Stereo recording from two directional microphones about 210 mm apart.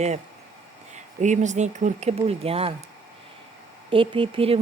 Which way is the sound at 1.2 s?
35° right (ahead or behind).